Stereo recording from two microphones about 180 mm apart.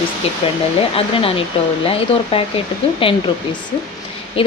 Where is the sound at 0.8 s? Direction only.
30° left (ahead or behind).